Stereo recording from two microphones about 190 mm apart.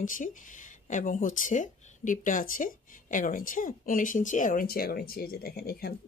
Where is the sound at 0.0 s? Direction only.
45° left (ahead or behind).